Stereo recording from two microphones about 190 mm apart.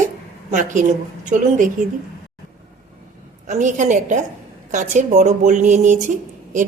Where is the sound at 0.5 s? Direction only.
40° right (ahead or behind).